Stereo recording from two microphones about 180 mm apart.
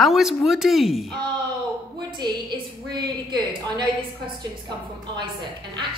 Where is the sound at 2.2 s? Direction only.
25° right (ahead or behind).